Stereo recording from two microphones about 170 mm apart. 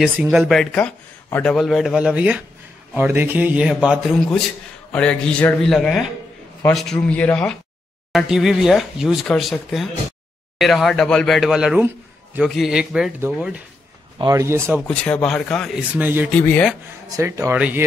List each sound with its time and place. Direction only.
0.0 s a man's voice: 5° right (ahead or behind)
4.9 s speech: 5° left (ahead or behind)
14.1 s a man's voice: 20° right (ahead or behind)
14.8 s speech: 5° left (ahead or behind)
15.9 s a man's voice: 10° right (ahead or behind)
16.3 s speech: 10° left (ahead or behind)
17.1 s a man's voice: 15° right (ahead or behind)